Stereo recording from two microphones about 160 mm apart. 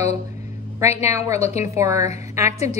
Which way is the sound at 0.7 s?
15° right (ahead or behind).